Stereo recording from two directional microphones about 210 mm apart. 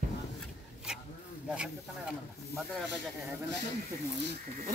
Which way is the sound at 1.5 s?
5° right (ahead or behind).